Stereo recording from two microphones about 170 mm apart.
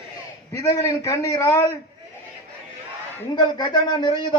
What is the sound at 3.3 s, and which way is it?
Speech, 25° left (ahead or behind).